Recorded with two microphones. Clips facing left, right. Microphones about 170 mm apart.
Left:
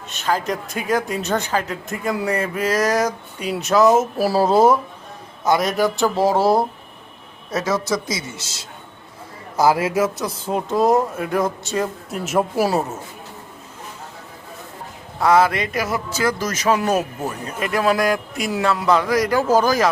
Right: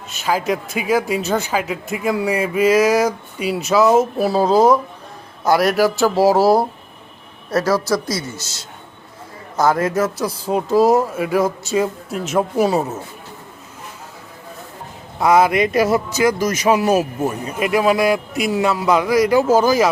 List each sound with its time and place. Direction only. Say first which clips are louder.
0.1 s a man's voice: right 2 dB; 5° right (ahead or behind)
8.3 s a man's voice: right 3 dB; 30° left (ahead or behind)
9.6 s speech: even; 10° left (ahead or behind)
15.2 s a man's voice: right 2 dB; 15° right (ahead or behind)